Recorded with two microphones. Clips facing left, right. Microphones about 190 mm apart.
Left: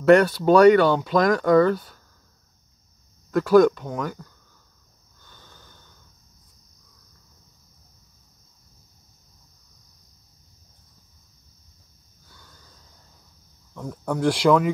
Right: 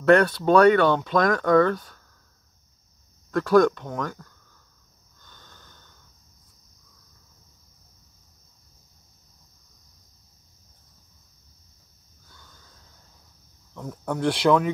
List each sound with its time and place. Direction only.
0.0 s speech: 5° left (ahead or behind)
3.3 s speech: 5° left (ahead or behind)
5.2 s snort: 5° left (ahead or behind)
12.3 s a sound: 5° left (ahead or behind)
13.7 s speech: centre (ahead or behind)